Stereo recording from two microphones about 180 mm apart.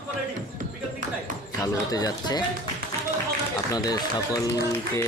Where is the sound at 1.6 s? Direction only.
20° left (ahead or behind).